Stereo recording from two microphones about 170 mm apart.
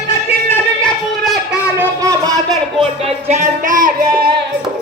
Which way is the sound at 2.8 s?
40° right (ahead or behind).